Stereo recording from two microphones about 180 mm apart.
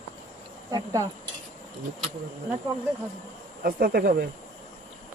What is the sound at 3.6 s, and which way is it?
Speech, 55° right (ahead or behind).